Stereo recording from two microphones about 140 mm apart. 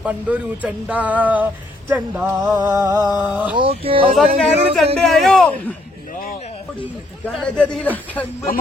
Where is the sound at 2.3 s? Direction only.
25° right (ahead or behind).